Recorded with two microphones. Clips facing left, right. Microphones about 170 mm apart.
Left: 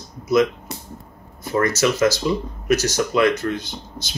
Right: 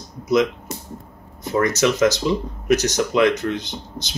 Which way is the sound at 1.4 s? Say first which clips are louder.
Right 1 dB; 20° right (ahead or behind).